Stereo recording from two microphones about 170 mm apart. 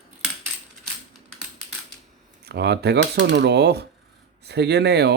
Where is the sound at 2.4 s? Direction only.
75° right (ahead or behind).